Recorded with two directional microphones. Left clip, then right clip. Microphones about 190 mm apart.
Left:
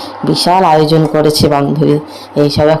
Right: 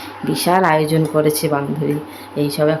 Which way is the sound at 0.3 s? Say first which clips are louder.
Left 6 dB; 20° left (ahead or behind).